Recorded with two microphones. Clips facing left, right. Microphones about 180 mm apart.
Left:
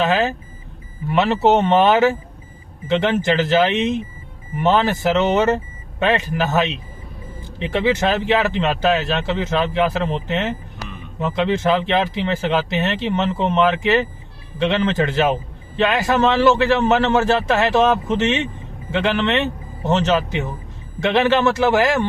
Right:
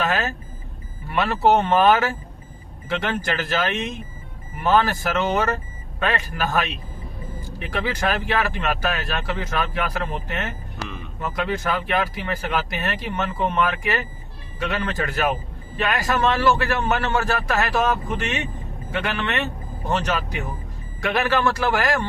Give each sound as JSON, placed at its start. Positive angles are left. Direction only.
{"t": 1.1, "sound": "a man's voice", "side_deg": 25}
{"t": 18.9, "sound": "a man's voice", "side_deg": 25}